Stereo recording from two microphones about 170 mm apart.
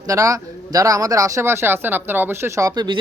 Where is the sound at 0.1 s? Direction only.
20° right (ahead or behind).